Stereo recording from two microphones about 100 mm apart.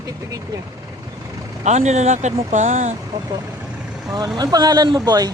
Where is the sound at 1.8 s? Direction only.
90° right.